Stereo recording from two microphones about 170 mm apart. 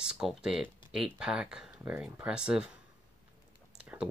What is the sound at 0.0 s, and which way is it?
Speech, 5° right (ahead or behind).